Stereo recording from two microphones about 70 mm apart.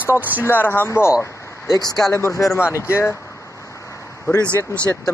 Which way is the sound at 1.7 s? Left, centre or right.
Left.